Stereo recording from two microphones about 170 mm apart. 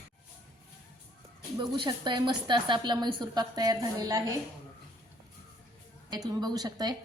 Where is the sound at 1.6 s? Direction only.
25° right (ahead or behind).